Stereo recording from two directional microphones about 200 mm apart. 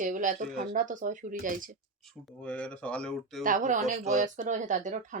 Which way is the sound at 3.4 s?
40° right (ahead or behind).